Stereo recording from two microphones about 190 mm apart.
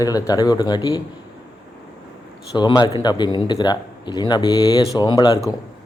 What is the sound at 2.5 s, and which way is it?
Speech, 20° left (ahead or behind).